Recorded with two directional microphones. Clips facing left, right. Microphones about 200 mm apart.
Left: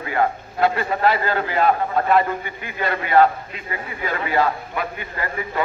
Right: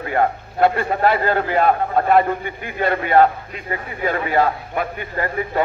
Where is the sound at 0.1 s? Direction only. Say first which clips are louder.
Right 2 dB; 55° right (ahead or behind).